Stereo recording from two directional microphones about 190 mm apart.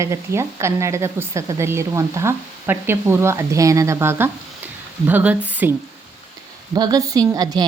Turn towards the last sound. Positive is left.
turn(degrees=-20)  # may be behind; listen again after turning